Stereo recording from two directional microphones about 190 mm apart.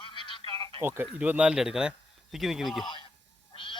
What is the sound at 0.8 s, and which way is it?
Speech, 10° right (ahead or behind).